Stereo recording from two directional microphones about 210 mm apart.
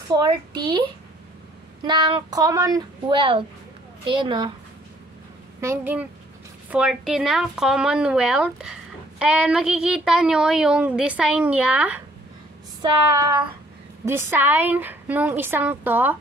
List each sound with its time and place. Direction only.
0.1 s a child's voice: 20° right (ahead or behind)
5.6 s a woman's voice: 10° right (ahead or behind)
14.0 s a woman's voice: 10° right (ahead or behind)